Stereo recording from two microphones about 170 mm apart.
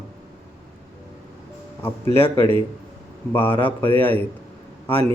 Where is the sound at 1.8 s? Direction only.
15° left (ahead or behind).